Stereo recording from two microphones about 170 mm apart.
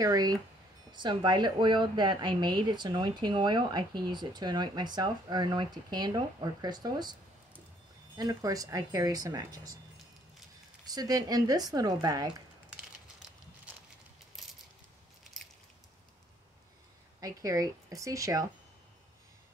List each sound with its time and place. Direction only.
0.0 s speech: 20° right (ahead or behind)
8.2 s speech: 20° right (ahead or behind)
10.9 s speech: 20° right (ahead or behind)
14.4 s coin: centre (ahead or behind)
17.2 s speech: 20° right (ahead or behind)